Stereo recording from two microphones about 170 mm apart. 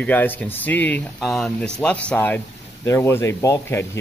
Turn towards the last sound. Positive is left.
turn(degrees=15)  # may be behind; listen again after turning